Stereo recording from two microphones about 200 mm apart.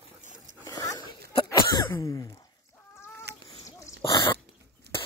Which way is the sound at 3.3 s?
55° right (ahead or behind).